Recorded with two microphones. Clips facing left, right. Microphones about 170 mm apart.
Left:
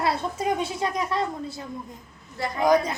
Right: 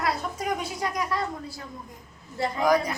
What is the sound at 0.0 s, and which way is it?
A woman's voice, 30° left (ahead or behind).